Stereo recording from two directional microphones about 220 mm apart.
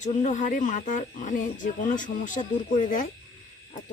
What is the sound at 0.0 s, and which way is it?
Speech, 35° left (ahead or behind).